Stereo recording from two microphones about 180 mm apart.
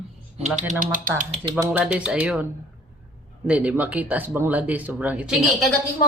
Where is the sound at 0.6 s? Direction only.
45° right (ahead or behind).